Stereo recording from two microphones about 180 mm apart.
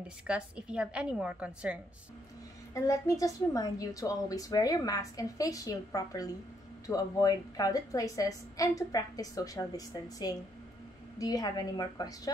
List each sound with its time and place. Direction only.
0.3 s a woman's voice: 5° right (ahead or behind)
2.7 s a woman's voice: 20° left (ahead or behind)